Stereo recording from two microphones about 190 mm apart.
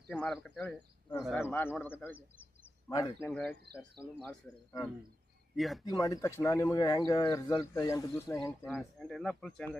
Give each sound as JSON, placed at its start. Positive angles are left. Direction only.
{"t": 0.1, "sound": "speech", "side_deg": 5}
{"t": 5.5, "sound": "speech", "side_deg": 0}
{"t": 5.8, "sound": "speech", "side_deg": 20}
{"t": 8.7, "sound": "speech", "side_deg": 0}